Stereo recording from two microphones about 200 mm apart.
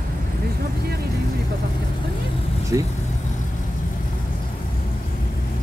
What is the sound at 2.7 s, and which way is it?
Speech, 15° right (ahead or behind).